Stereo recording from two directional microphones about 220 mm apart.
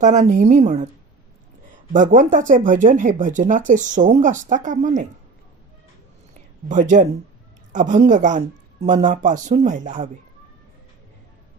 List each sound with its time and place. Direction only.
0.0 s speech: 35° right (ahead or behind)
1.9 s speech: 35° right (ahead or behind)
6.7 s speech: 35° right (ahead or behind)